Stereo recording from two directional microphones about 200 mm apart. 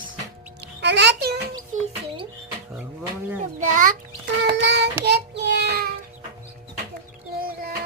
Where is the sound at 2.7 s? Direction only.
10° right (ahead or behind).